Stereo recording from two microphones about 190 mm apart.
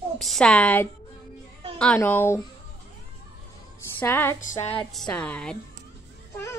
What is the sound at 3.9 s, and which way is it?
A woman's voice, 10° left (ahead or behind).